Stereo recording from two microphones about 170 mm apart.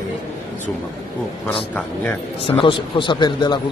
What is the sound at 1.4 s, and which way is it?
Speech, 10° left (ahead or behind).